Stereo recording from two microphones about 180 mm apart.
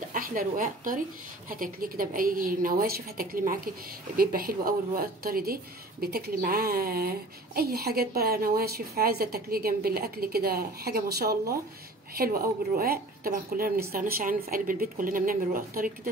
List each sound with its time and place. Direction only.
0.1 s a woman's voice: 50° right (ahead or behind)